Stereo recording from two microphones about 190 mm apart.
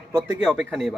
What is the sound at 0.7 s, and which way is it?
Speech, centre (ahead or behind).